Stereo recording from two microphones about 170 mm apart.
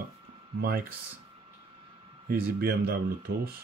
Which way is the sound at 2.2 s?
65° right (ahead or behind).